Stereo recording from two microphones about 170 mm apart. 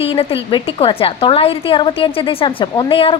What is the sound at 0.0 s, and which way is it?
A woman's voice, 35° left (ahead or behind).